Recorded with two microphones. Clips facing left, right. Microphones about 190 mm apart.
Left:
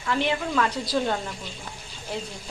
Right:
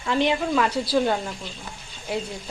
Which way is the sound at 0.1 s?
15° right (ahead or behind).